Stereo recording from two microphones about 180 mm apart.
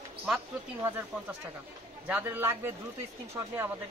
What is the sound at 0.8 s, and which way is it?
Speech, 10° right (ahead or behind).